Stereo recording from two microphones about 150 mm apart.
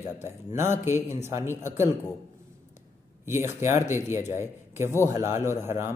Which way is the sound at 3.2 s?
15° right (ahead or behind).